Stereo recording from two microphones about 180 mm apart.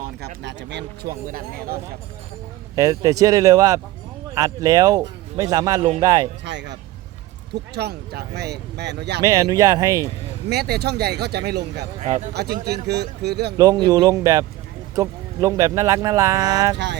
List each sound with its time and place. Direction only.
0.4 s speech: 70° right (ahead or behind); by 1.8 s 55° right (ahead or behind)
2.7 s speech: 20° right (ahead or behind)
6.4 s speech: 75° right (ahead or behind)
7.5 s speech: 65° right (ahead or behind)
9.2 s speech: 20° right (ahead or behind)
10.5 s speech: 60° right (ahead or behind)
11.9 s speech: 40° right (ahead or behind)
12.3 s speech: 65° right (ahead or behind)
13.6 s speech: 20° right (ahead or behind)
16.7 s speech: 70° right (ahead or behind)